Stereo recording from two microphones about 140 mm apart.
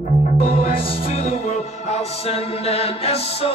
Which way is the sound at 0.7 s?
40° left (ahead or behind).